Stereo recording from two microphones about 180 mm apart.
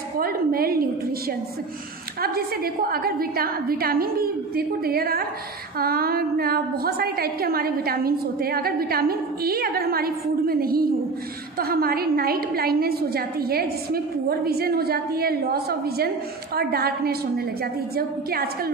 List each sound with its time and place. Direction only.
0.2 s a woman's voice: 55° right (ahead or behind)
2.2 s a woman's voice: 55° right (ahead or behind)